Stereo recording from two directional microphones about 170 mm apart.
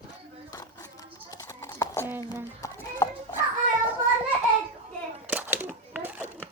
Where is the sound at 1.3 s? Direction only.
20° left (ahead or behind).